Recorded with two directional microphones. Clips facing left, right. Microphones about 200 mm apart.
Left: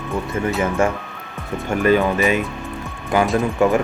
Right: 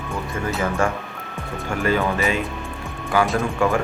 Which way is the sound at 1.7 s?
20° left (ahead or behind).